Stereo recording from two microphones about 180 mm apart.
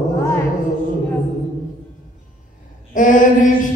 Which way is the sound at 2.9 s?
45° left (ahead or behind).